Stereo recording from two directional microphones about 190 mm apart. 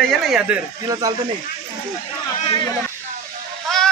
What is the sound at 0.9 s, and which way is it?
Speech, 20° right (ahead or behind).